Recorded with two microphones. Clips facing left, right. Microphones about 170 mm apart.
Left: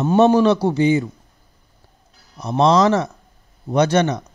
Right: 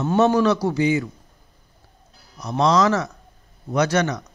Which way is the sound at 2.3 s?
25° left (ahead or behind).